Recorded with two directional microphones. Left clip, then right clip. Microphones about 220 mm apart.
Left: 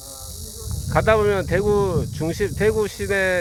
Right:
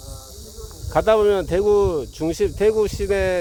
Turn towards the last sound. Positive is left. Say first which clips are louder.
# even
turn(degrees=-10)  # may be behind; listen again after turning